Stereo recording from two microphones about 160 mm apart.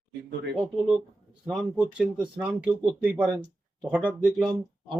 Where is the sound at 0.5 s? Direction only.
10° right (ahead or behind).